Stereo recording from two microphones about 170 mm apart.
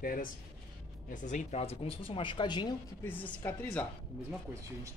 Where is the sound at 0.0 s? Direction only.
55° left (ahead or behind); by 2.7 s 25° left (ahead or behind).